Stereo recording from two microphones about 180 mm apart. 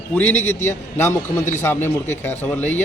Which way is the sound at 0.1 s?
10° left (ahead or behind).